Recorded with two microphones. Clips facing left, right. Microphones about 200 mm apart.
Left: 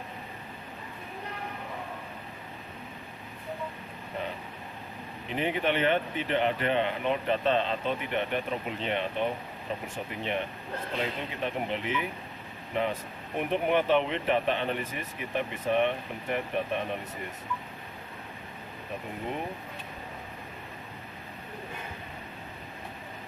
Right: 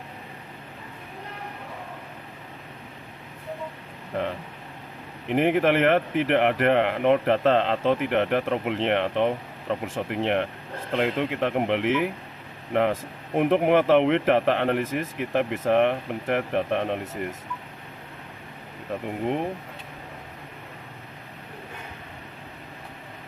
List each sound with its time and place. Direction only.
4.1 s speech: 90° right
5.3 s speech: 90° right
13.4 s speech: 90° right